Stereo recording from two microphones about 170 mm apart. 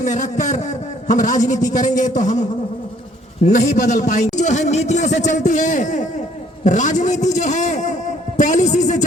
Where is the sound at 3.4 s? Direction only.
45° left (ahead or behind).